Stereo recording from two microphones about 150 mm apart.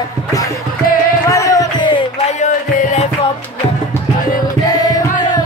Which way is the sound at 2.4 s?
55° left (ahead or behind).